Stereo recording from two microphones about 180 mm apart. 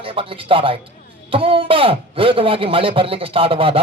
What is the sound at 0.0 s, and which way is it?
Speech, 30° right (ahead or behind).